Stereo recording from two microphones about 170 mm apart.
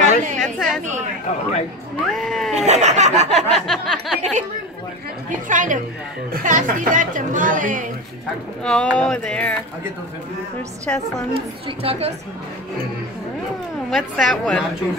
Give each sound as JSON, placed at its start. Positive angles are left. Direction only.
{"t": 0.0, "sound": "a sound", "side_deg": -45}
{"t": 0.4, "sound": "a sound", "side_deg": 0}
{"t": 2.1, "sound": "speech", "side_deg": 0}
{"t": 2.5, "sound": "a sound", "side_deg": -40}
{"t": 3.3, "sound": "speech", "side_deg": 0}
{"t": 4.2, "sound": "speech", "side_deg": -45}
{"t": 5.5, "sound": "speech", "side_deg": -50}
{"t": 8.6, "sound": "speech", "side_deg": 5}
{"t": 10.9, "sound": "a woman's voice", "side_deg": 10}
{"t": 11.8, "sound": "a woman's voice", "side_deg": -35}
{"t": 13.8, "sound": "speech", "side_deg": 0}